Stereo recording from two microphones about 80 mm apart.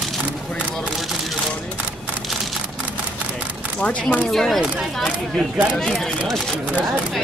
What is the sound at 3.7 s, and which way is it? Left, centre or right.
Speech, centre.